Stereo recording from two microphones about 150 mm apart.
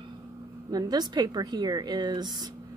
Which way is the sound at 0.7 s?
25° right (ahead or behind).